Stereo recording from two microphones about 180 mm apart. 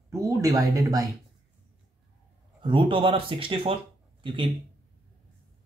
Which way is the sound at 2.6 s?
25° right (ahead or behind).